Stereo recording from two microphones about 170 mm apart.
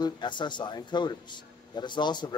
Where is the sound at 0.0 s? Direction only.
25° left (ahead or behind).